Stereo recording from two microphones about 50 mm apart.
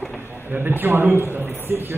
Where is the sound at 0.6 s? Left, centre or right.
Right.